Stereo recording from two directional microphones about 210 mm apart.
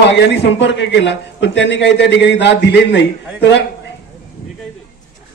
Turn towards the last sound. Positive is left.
turn(degrees=60)  # may be behind; listen again after turning